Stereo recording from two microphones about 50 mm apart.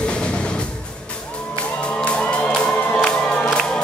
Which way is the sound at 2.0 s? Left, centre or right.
Left.